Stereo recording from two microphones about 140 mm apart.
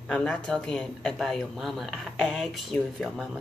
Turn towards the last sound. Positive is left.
turn(degrees=0)  # may be behind; listen again after turning